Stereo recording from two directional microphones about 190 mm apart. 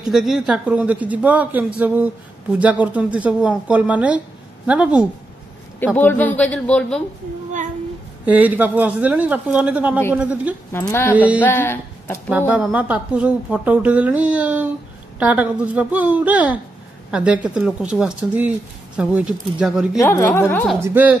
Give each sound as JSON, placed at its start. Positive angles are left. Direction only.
{"t": 0.0, "sound": "speech", "side_deg": 0}
{"t": 5.9, "sound": "speech", "side_deg": 10}
{"t": 8.3, "sound": "speech", "side_deg": -10}
{"t": 10.7, "sound": "speech", "side_deg": 15}
{"t": 12.3, "sound": "speech", "side_deg": -10}
{"t": 20.0, "sound": "speech", "side_deg": 15}
{"t": 20.8, "sound": "speech", "side_deg": -10}